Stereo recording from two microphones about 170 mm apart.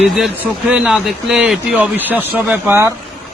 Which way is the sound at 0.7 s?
5° right (ahead or behind).